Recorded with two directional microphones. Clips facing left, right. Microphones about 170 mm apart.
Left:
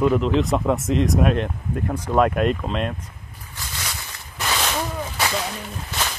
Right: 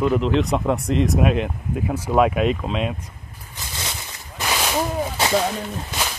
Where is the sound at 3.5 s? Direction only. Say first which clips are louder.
Right 1 dB; 20° right (ahead or behind).